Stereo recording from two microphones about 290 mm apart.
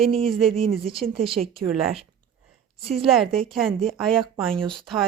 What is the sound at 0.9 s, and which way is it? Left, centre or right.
Speech, centre.